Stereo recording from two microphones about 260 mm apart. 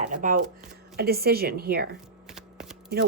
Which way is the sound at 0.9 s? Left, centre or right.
Right.